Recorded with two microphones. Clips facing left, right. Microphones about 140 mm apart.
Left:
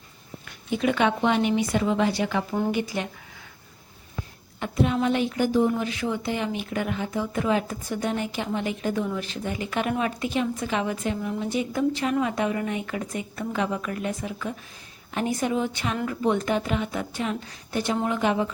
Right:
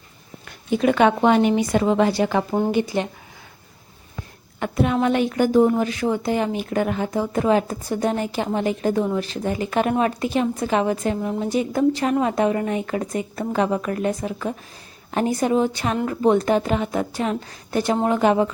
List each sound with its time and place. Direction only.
0.7 s speech: 45° right (ahead or behind)
2.6 s a woman's voice: 25° right (ahead or behind)
4.6 s a woman's voice: 60° right (ahead or behind)